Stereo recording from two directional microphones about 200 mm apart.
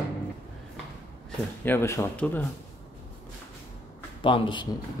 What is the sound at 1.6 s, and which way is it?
Speech, 10° left (ahead or behind).